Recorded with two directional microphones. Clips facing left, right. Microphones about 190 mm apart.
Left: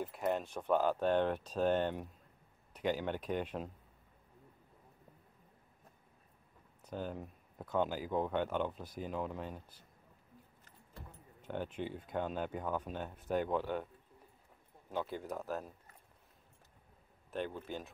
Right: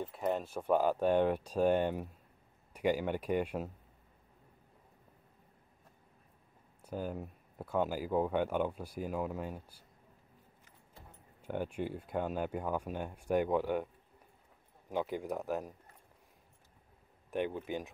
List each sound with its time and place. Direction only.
0.0 s speech: 5° left (ahead or behind)
6.8 s speech: 10° right (ahead or behind)
11.4 s speech: 10° right (ahead or behind)
14.9 s speech: 15° right (ahead or behind)
17.3 s speech: 15° right (ahead or behind)